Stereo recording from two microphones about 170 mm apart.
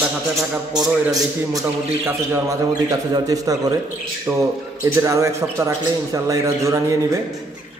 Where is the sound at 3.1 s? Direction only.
20° right (ahead or behind).